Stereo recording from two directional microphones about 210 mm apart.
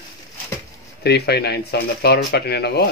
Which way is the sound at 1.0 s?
50° left (ahead or behind).